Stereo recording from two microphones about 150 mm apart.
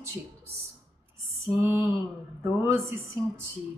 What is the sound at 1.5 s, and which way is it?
Speech, 15° right (ahead or behind).